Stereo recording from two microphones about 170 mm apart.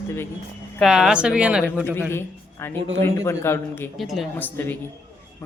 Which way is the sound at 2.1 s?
15° left (ahead or behind).